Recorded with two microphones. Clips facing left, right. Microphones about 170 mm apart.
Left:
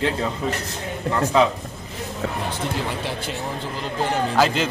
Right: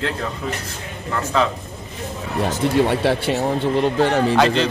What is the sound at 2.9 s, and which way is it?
Speech, 70° right (ahead or behind).